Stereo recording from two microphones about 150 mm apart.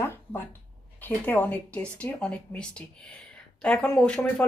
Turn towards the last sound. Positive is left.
turn(degrees=10)  # may be behind; listen again after turning